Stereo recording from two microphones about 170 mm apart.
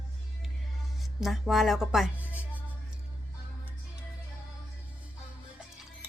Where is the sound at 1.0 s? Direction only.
Centre (ahead or behind).